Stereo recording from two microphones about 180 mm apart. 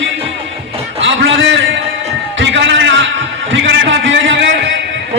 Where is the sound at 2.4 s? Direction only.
85° right.